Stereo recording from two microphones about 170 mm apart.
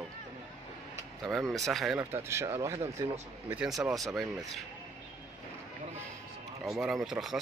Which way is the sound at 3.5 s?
5° right (ahead or behind).